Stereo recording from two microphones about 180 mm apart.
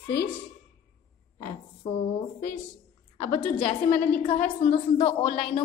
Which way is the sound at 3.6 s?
35° left (ahead or behind).